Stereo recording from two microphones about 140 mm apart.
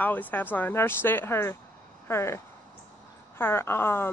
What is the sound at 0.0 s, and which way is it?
Speech, 10° left (ahead or behind).